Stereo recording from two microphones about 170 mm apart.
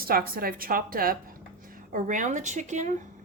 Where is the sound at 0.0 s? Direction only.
60° right (ahead or behind); by 3.1 s 45° right (ahead or behind).